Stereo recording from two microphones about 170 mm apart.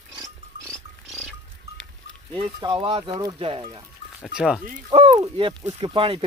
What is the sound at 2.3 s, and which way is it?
Speech, 30° right (ahead or behind).